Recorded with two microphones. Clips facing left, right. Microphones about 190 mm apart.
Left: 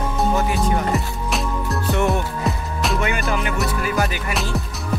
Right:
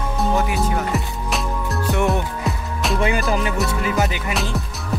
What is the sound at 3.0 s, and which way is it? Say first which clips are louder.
Music: right 6 dB; 35° right (ahead or behind).